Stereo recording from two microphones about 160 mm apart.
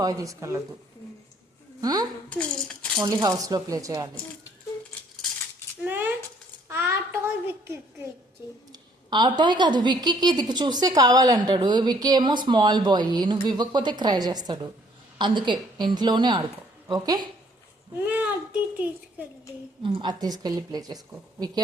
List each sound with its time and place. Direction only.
0.0 s a woman's voice: 20° right (ahead or behind)
1.8 s a woman's voice: 25° right (ahead or behind)
2.3 s a child's voice: 5° left (ahead or behind)
3.0 s a woman's voice: 25° right (ahead or behind)
5.8 s a sound: 10° right (ahead or behind)
8.7 s a woman's voice: 25° right (ahead or behind)
17.9 s a child's voice: 10° right (ahead or behind)
19.8 s a woman's voice: 30° right (ahead or behind)